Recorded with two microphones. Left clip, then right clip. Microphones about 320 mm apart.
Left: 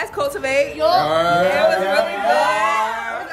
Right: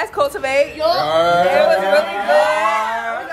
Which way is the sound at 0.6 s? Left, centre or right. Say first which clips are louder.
Left 1 dB; centre.